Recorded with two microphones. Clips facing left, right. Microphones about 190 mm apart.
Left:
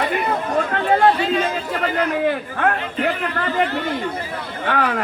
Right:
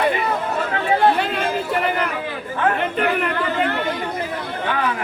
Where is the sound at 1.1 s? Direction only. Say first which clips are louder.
Left 1 dB; 60° right (ahead or behind).